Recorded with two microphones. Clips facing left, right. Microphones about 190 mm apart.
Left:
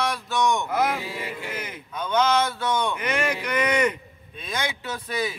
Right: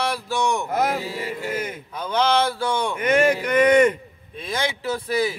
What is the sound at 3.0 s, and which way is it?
Speech, 50° right (ahead or behind).